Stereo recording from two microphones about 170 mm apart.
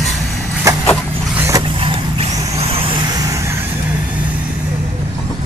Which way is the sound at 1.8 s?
35° right (ahead or behind).